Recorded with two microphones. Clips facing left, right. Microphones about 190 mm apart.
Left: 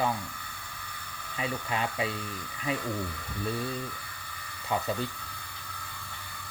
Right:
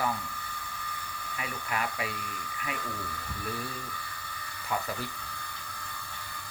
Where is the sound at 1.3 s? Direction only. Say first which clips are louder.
Left 3 dB; 25° left (ahead or behind).